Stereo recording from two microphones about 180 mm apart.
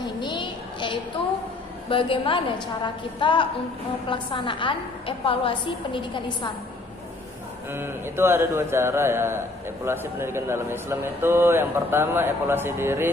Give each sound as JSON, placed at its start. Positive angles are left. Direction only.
{"t": 0.0, "sound": "a sound", "side_deg": 25}
{"t": 1.9, "sound": "a woman's voice", "side_deg": 30}
{"t": 7.7, "sound": "a man's voice", "side_deg": -10}